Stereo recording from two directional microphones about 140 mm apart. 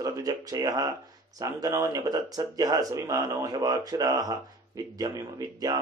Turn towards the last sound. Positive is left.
turn(degrees=-25)  # may be behind; listen again after turning